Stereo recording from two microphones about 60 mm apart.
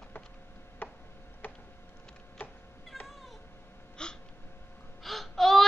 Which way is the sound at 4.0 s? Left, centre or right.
Centre.